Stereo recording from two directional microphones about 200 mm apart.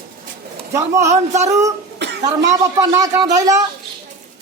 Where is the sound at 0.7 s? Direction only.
15° right (ahead or behind).